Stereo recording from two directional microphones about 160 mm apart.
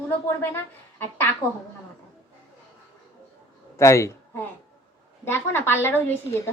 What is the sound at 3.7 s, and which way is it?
A woman's voice, 20° left (ahead or behind).